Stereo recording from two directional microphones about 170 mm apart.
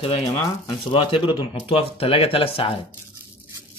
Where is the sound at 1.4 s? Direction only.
30° left (ahead or behind).